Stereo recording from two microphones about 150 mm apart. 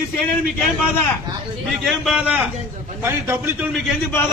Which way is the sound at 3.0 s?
15° right (ahead or behind).